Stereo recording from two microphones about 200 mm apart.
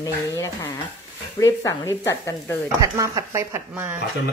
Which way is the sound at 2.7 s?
15° right (ahead or behind).